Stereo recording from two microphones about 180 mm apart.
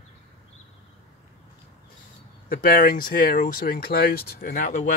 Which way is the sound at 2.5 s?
50° left (ahead or behind).